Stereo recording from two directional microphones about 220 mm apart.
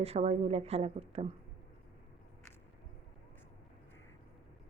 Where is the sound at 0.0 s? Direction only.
30° right (ahead or behind).